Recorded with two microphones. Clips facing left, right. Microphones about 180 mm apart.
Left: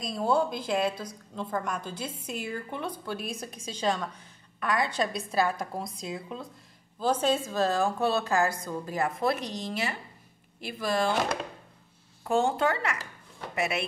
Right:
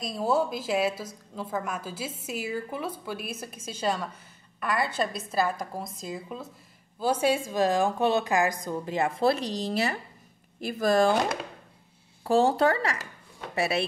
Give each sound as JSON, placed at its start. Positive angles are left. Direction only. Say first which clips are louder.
{"t": 0.0, "sound": "a woman's voice", "louder": "even", "side_deg": 0}
{"t": 12.2, "sound": "speech", "louder": "right 4 dB", "side_deg": -35}